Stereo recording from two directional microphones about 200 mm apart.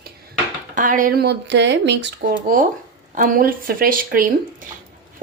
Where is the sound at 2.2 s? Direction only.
40° right (ahead or behind).